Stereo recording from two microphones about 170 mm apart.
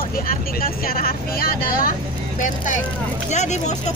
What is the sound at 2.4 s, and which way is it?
Speech, 50° left (ahead or behind).